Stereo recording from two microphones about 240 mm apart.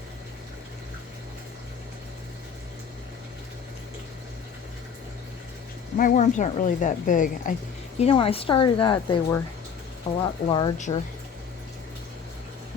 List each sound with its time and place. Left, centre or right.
6.0 s a woman's voice: left
10.1 s a woman's voice: left